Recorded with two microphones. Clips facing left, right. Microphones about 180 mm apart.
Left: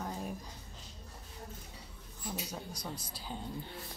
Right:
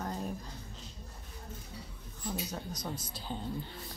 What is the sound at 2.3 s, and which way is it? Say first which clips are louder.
Speech: right 3 dB; 5° left (ahead or behind).